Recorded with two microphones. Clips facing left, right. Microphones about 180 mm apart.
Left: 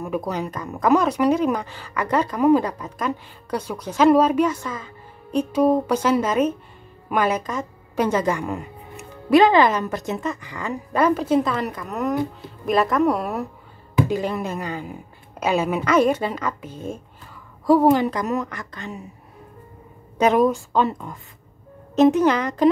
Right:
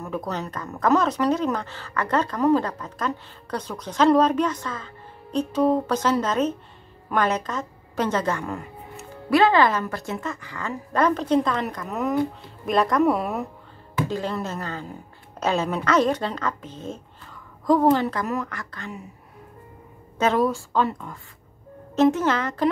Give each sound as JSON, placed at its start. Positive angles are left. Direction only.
{"t": 0.0, "sound": "speech", "side_deg": 10}
{"t": 14.0, "sound": "a woman's voice", "side_deg": 15}
{"t": 20.2, "sound": "a woman's voice", "side_deg": 15}